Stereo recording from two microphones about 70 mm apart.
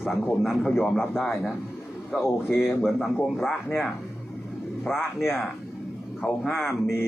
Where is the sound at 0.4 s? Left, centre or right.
Centre.